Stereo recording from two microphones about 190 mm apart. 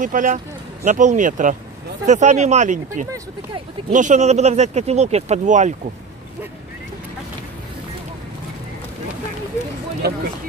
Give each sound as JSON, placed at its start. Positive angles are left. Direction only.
{"t": 0.0, "sound": "speech", "side_deg": -45}